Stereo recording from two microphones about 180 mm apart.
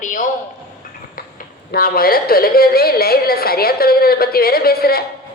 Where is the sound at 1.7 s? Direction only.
55° left (ahead or behind).